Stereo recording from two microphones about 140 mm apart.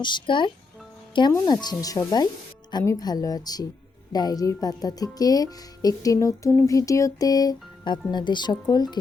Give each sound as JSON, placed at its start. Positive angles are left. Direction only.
{"t": 0.0, "sound": "speech", "side_deg": 35}
{"t": 1.6, "sound": "speech", "side_deg": 25}